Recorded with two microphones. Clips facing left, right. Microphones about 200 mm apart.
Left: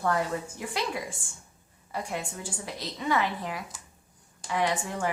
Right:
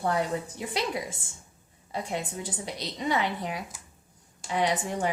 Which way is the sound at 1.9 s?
20° right (ahead or behind).